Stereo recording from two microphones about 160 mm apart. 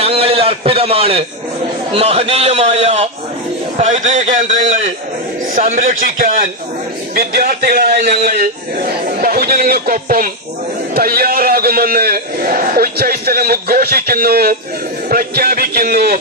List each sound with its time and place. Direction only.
0.0 s a man's voice: 40° right (ahead or behind); by 6.5 s 60° right (ahead or behind)
7.2 s a man's voice: 70° right (ahead or behind)